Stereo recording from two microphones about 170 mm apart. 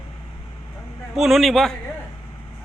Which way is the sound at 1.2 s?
Centre (ahead or behind).